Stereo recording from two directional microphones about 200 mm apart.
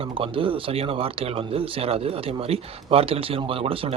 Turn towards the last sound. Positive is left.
turn(degrees=-30)  # may be behind; listen again after turning